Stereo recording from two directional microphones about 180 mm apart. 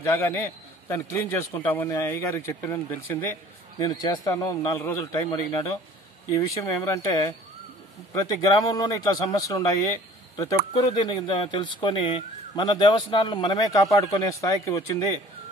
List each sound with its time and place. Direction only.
0.0 s a man's voice: 15° left (ahead or behind)
3.8 s a man's voice: 20° left (ahead or behind)
10.8 s speech: 25° left (ahead or behind)